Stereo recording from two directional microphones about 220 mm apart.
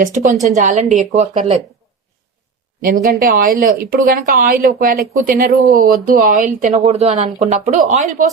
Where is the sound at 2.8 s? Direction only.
40° right (ahead or behind).